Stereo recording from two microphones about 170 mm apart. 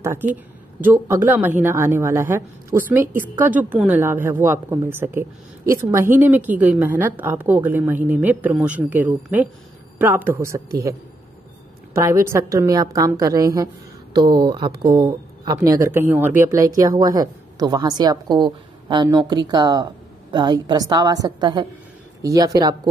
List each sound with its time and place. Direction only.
0.0 s a woman's voice: 15° right (ahead or behind)
11.9 s a woman's voice: 15° right (ahead or behind)